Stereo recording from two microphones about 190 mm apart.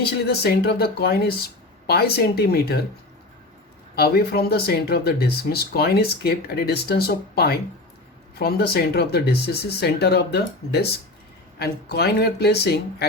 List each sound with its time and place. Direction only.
0.3 s speech: 55° left (ahead or behind)
3.9 s speech: 55° left (ahead or behind)